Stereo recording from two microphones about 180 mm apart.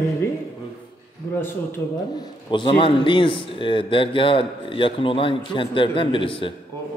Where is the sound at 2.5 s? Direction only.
30° left (ahead or behind).